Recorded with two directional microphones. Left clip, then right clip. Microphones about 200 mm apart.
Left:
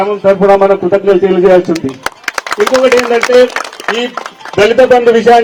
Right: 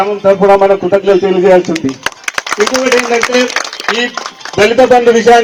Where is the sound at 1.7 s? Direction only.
40° left (ahead or behind).